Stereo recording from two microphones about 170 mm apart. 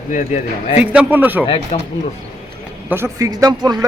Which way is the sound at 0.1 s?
45° left (ahead or behind).